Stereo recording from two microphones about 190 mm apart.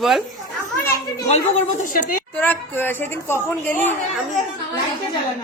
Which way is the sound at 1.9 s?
45° left (ahead or behind).